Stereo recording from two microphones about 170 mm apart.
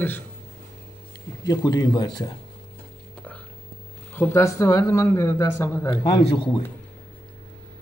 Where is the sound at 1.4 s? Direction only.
20° left (ahead or behind).